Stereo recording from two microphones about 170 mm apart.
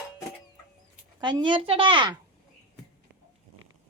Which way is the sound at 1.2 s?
25° right (ahead or behind).